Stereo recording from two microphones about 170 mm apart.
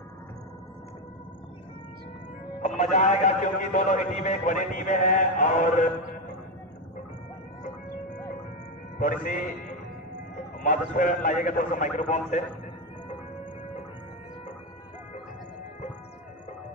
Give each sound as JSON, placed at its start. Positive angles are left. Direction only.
{"t": 2.8, "sound": "a man's voice", "side_deg": 45}
{"t": 8.9, "sound": "a man's voice", "side_deg": 50}